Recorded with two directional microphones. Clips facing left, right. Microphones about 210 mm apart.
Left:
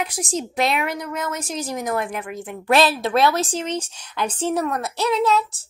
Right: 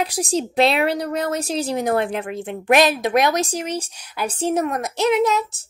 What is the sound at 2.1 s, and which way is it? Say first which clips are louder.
Speech: right 4 dB; 60° right (ahead or behind).